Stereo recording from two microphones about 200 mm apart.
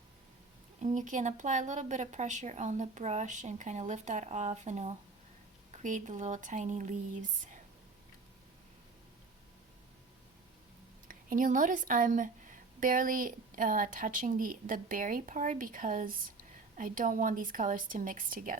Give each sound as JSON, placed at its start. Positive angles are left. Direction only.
{"t": 0.8, "sound": "a woman's voice", "side_deg": -40}
{"t": 11.1, "sound": "a woman's voice", "side_deg": -45}